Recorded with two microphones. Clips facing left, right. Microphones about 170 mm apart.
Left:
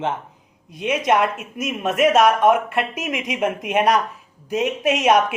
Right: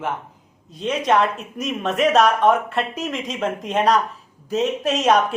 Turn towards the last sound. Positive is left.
turn(degrees=10)  # may be behind; listen again after turning